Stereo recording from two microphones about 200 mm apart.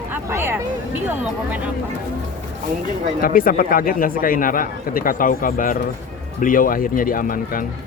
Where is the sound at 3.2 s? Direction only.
45° left (ahead or behind).